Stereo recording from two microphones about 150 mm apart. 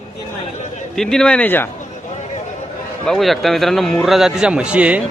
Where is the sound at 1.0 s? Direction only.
5° left (ahead or behind).